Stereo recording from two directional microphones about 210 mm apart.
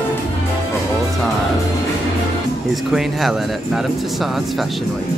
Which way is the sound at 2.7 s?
Centre (ahead or behind).